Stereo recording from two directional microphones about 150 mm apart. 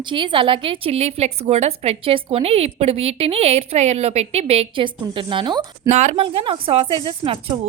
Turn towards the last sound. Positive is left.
turn(degrees=-40)  # may be behind; listen again after turning